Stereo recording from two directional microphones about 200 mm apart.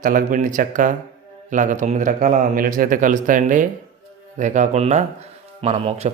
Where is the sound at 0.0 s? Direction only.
45° right (ahead or behind).